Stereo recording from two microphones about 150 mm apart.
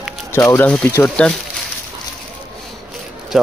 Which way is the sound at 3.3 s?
Centre (ahead or behind).